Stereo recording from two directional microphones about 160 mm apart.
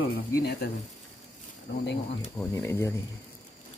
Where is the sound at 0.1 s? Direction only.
85° left.